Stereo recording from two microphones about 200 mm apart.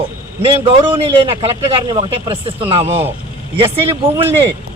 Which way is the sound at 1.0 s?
30° right (ahead or behind).